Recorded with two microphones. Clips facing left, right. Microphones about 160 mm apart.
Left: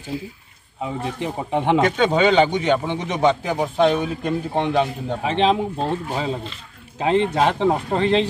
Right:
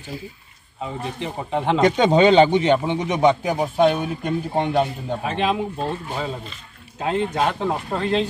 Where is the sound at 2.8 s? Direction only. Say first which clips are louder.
Right 1 dB; 15° right (ahead or behind).